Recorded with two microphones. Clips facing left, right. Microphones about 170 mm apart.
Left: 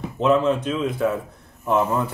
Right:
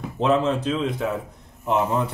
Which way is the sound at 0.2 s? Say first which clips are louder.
Left 2 dB; 30° right (ahead or behind).